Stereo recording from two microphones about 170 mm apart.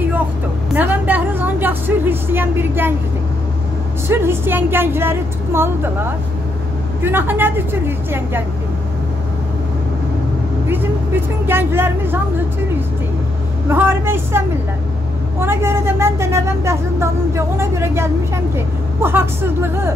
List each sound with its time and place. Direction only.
0.7 s vehicle: 10° right (ahead or behind)
4.1 s speech: 15° right (ahead or behind)
10.7 s speech: 10° right (ahead or behind)
13.7 s speech: 15° right (ahead or behind)
15.4 s speech: 15° right (ahead or behind)